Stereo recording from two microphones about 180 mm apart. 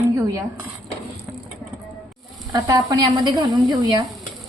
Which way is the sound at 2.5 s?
20° right (ahead or behind).